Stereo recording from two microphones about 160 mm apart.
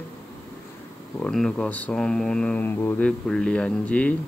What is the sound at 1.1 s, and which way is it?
Speech, 5° left (ahead or behind).